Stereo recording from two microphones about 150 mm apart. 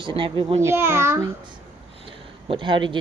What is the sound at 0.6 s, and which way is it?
Speech, 15° right (ahead or behind).